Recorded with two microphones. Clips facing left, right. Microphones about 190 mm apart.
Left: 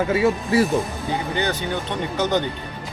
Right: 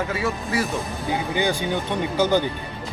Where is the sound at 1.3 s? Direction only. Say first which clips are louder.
Right 1 dB; 10° right (ahead or behind).